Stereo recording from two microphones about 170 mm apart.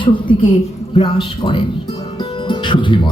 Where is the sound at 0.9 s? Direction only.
30° left (ahead or behind).